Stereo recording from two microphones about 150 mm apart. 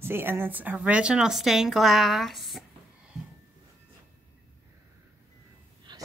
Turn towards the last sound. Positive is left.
turn(degrees=-30)  # may be behind; listen again after turning